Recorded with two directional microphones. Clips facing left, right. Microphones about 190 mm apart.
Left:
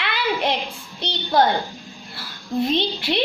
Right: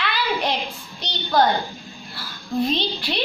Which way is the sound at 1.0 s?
25° left (ahead or behind).